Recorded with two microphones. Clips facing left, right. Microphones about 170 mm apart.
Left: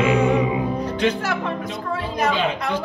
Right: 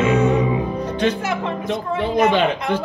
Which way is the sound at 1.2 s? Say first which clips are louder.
Right 2 dB; 20° right (ahead or behind).